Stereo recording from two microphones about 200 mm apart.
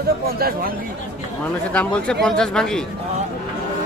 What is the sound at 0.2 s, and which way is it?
Speech, 50° right (ahead or behind).